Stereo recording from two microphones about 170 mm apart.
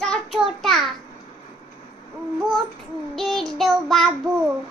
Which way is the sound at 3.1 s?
Centre (ahead or behind).